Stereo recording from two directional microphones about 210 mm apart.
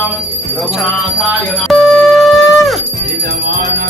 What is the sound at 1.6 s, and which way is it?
Music, centre (ahead or behind).